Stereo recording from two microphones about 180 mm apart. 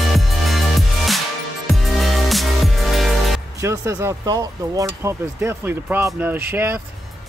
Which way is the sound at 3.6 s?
15° right (ahead or behind).